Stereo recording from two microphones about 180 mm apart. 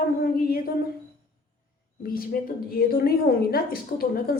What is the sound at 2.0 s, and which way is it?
A woman's voice, 55° left (ahead or behind).